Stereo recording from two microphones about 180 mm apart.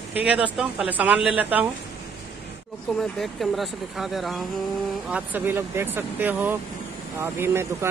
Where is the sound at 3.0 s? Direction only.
Centre (ahead or behind).